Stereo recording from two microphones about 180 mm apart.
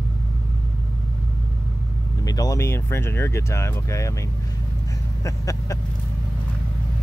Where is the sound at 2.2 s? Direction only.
20° left (ahead or behind).